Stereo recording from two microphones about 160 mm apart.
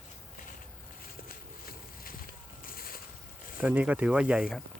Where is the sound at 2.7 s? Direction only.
65° left (ahead or behind).